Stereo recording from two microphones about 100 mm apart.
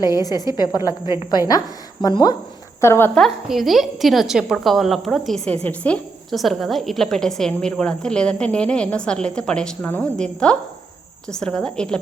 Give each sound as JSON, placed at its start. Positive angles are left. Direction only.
{"t": 0.0, "sound": "a woman's voice", "side_deg": 40}
{"t": 2.8, "sound": "speech", "side_deg": 25}
{"t": 3.2, "sound": "a woman's voice", "side_deg": 0}
{"t": 5.6, "sound": "a woman's voice", "side_deg": 15}
{"t": 6.3, "sound": "a woman's voice", "side_deg": 0}
{"t": 9.8, "sound": "speech", "side_deg": 20}
{"t": 10.2, "sound": "a woman's voice", "side_deg": 10}